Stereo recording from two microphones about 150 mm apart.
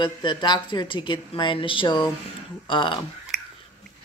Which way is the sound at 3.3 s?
Centre (ahead or behind).